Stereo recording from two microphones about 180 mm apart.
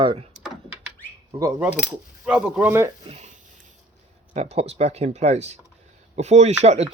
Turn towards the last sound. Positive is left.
turn(degrees=-35)  # may be behind; listen again after turning